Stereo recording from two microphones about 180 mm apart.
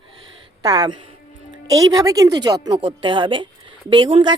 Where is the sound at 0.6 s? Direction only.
20° right (ahead or behind).